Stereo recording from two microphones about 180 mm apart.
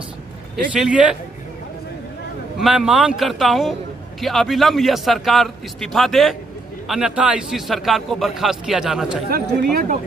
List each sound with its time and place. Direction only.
0.7 s a man's voice: 5° right (ahead or behind)
2.6 s a man's voice: 5° right (ahead or behind)
9.6 s speech: 60° right (ahead or behind)